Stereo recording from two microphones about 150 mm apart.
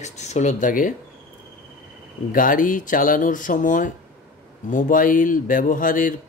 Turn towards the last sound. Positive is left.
turn(degrees=60)  # may be behind; listen again after turning